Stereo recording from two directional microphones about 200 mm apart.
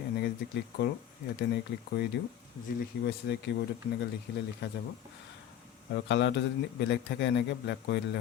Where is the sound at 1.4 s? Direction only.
60° left (ahead or behind).